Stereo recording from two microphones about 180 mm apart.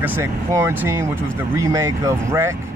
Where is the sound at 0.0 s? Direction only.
10° right (ahead or behind).